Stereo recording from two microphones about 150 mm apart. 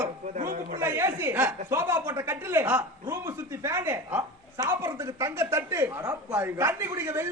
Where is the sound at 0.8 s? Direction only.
15° right (ahead or behind).